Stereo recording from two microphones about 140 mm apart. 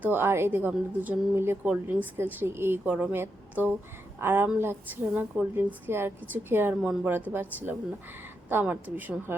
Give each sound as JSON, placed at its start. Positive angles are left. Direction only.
{"t": 0.0, "sound": "a woman's voice", "side_deg": -15}